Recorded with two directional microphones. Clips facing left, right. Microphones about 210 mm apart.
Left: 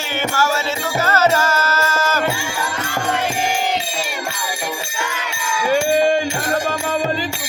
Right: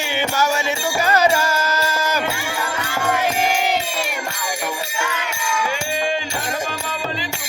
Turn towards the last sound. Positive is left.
turn(degrees=50)  # may be behind; listen again after turning